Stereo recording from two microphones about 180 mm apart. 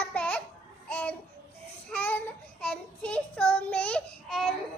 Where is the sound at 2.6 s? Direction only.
5° left (ahead or behind).